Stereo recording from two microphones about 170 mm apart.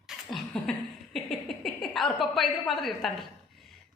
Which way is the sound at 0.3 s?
5° left (ahead or behind).